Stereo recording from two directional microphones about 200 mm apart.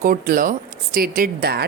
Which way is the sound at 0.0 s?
45° right (ahead or behind).